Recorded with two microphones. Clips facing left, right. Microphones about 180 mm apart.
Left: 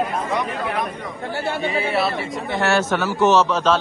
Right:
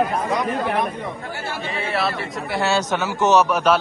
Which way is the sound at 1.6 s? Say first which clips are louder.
Left 3 dB; centre (ahead or behind).